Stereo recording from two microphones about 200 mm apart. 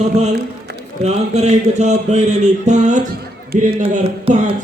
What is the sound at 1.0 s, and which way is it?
Speech, 30° right (ahead or behind).